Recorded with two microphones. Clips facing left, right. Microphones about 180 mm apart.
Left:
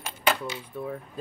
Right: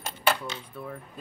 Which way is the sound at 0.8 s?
20° left (ahead or behind).